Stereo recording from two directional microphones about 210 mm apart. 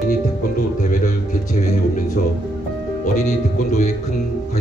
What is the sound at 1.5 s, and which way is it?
Speech, 35° left (ahead or behind).